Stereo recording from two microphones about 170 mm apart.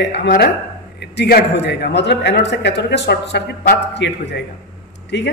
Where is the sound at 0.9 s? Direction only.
70° left (ahead or behind); by 5.3 s 90° left.